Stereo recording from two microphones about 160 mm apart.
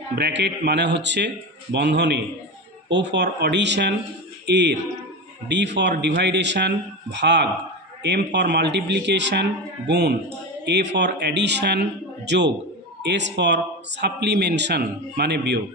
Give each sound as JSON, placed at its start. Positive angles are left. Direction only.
{"t": 0.1, "sound": "speech", "side_deg": -90}